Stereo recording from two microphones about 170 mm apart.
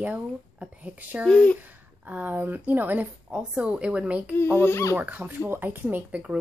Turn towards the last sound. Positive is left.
turn(degrees=-10)  # may be behind; listen again after turning